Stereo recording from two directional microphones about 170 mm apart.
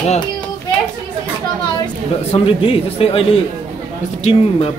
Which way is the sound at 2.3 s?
35° left (ahead or behind).